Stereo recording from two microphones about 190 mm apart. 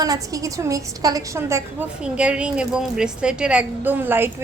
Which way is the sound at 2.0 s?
5° right (ahead or behind).